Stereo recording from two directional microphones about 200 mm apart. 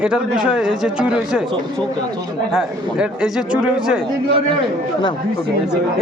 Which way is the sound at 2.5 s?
5° right (ahead or behind).